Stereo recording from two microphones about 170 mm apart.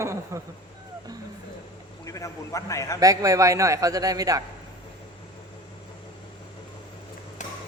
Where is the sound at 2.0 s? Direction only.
20° left (ahead or behind).